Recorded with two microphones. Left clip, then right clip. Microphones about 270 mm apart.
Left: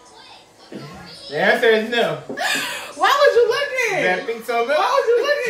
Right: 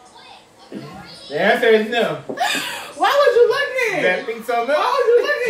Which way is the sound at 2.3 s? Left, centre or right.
Centre.